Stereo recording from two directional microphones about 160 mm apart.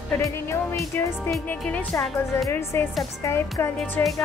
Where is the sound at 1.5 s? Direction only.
10° left (ahead or behind).